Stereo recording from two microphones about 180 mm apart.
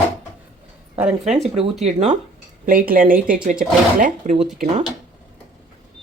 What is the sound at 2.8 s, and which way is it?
Speech, 50° right (ahead or behind).